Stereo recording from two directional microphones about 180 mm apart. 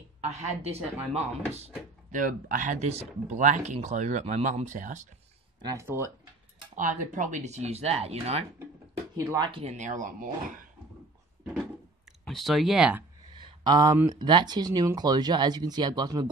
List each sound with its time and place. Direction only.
0.2 s speech: 35° right (ahead or behind)
2.1 s speech: 50° right (ahead or behind)
5.6 s speech: 20° right (ahead or behind)
6.7 s speech: 45° right (ahead or behind)
9.1 s speech: 20° right (ahead or behind); by 10.6 s 50° right (ahead or behind)
12.3 s speech: centre (ahead or behind)
13.3 s a sound: 25° right (ahead or behind)
14.1 s speech: 25° right (ahead or behind)